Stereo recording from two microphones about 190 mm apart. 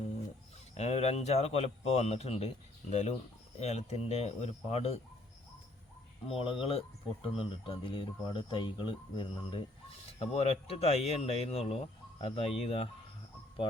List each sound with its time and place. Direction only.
0.7 s speech: 35° left (ahead or behind)
6.2 s speech: 30° left (ahead or behind)